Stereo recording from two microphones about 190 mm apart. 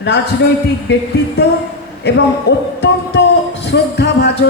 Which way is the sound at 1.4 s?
60° left (ahead or behind).